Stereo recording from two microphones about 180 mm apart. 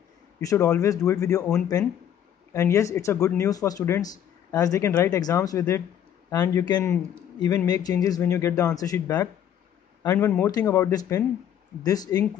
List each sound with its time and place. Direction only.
0.4 s speech: 20° left (ahead or behind)
2.5 s speech: 15° left (ahead or behind)